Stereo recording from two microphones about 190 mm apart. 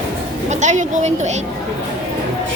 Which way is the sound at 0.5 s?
40° right (ahead or behind).